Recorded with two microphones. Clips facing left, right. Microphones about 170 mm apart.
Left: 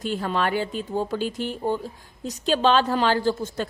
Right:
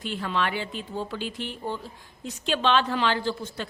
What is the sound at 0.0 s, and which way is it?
A woman's voice, 40° left (ahead or behind).